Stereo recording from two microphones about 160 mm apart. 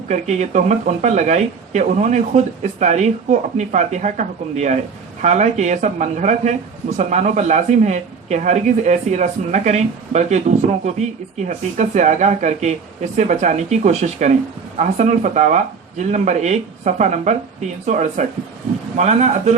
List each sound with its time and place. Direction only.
0.1 s speech: 45° right (ahead or behind)